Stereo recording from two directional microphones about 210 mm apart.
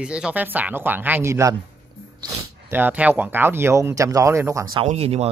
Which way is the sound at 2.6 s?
10° right (ahead or behind).